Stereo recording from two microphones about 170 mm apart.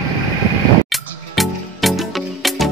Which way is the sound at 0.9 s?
Centre (ahead or behind).